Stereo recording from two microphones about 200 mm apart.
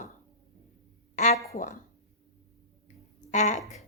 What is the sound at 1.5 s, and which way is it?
Speech, 40° left (ahead or behind).